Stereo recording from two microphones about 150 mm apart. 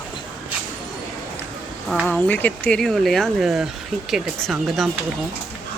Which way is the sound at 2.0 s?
10° left (ahead or behind).